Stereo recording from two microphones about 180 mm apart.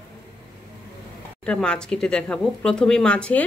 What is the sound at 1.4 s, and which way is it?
Speech, 5° left (ahead or behind).